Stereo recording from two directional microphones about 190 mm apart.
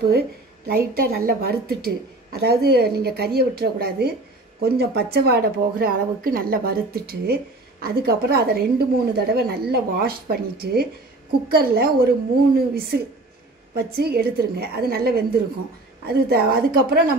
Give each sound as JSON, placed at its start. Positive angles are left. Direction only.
{"t": 0.7, "sound": "a woman's voice", "side_deg": -55}